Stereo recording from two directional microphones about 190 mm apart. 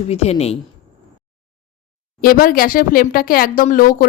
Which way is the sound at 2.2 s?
50° left (ahead or behind).